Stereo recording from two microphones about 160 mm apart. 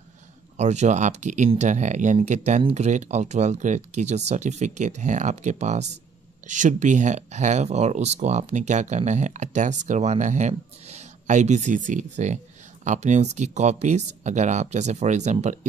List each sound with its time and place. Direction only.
0.6 s speech: 45° right (ahead or behind)